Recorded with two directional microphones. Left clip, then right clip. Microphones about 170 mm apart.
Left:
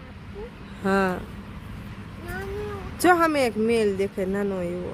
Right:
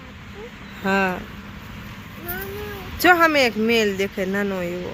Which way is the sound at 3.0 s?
15° left (ahead or behind).